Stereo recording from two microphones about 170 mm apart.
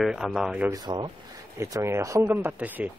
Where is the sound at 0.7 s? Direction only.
25° right (ahead or behind); by 2.9 s 10° right (ahead or behind).